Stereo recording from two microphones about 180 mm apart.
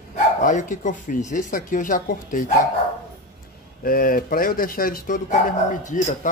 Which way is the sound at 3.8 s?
50° left (ahead or behind).